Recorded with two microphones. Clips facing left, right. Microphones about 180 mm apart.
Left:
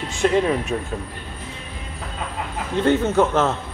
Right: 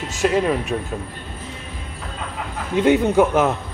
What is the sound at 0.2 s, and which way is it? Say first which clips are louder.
Speech: even; 5° right (ahead or behind).